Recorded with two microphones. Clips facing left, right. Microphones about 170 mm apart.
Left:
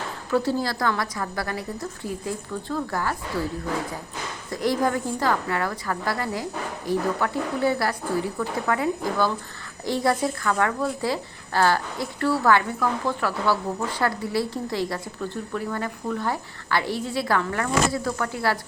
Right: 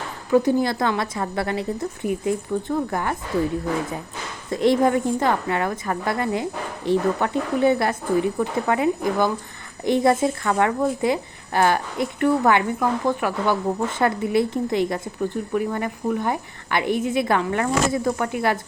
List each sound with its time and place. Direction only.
0.3 s speech: 15° right (ahead or behind)
4.5 s speech: 25° right (ahead or behind)